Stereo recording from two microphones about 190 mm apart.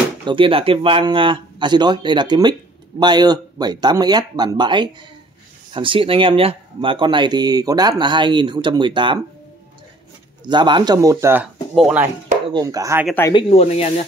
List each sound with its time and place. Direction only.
0.2 s speech: 25° right (ahead or behind)
10.4 s speech: 25° right (ahead or behind); by 12.1 s 5° right (ahead or behind)
12.5 s speech: 15° right (ahead or behind)
13.3 s speech: 30° left (ahead or behind)